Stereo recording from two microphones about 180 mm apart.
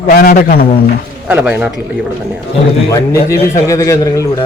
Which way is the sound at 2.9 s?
15° left (ahead or behind).